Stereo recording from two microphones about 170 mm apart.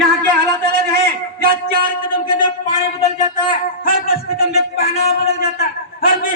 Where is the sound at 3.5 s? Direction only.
65° left (ahead or behind).